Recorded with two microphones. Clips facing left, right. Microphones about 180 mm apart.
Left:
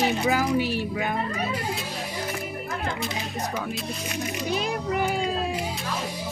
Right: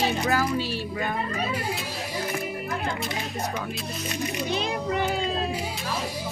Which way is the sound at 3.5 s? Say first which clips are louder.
Left 1 dB; centre (ahead or behind).